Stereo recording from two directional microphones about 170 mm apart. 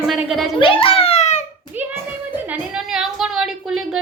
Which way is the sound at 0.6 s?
30° left (ahead or behind).